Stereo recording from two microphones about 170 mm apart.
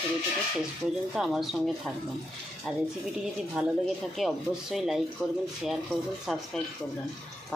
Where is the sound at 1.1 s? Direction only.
Centre (ahead or behind).